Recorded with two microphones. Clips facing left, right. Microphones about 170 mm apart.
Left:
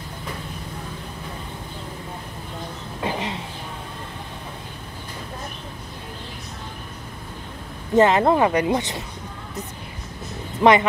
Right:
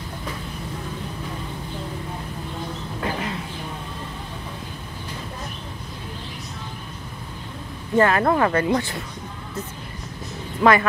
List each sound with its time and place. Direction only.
3.0 s a sound: 20° left (ahead or behind)
7.9 s speech: 20° left (ahead or behind)
10.6 s speech: 20° left (ahead or behind)